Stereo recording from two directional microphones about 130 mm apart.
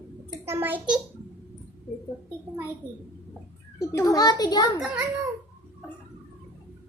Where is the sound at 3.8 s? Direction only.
25° left (ahead or behind).